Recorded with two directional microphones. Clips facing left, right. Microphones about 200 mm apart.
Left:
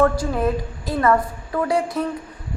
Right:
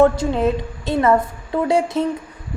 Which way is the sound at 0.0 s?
25° right (ahead or behind).